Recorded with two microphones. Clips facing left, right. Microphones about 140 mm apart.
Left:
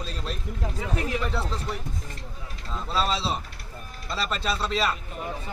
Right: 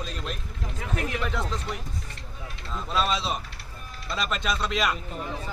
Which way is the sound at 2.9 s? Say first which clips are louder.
Even; 30° left (ahead or behind).